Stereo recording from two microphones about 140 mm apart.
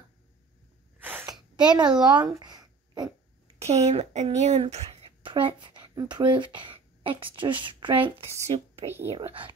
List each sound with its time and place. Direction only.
1.0 s gasp: 15° right (ahead or behind)
1.8 s a woman's voice: 30° right (ahead or behind)
3.5 s speech: 50° right (ahead or behind)
5.2 s speech: 35° right (ahead or behind)
8.2 s speech: 50° right (ahead or behind)